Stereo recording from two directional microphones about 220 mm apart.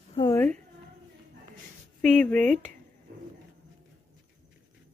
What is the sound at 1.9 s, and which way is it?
Speech, 5° left (ahead or behind).